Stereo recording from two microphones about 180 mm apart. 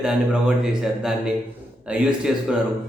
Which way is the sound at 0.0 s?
5° right (ahead or behind).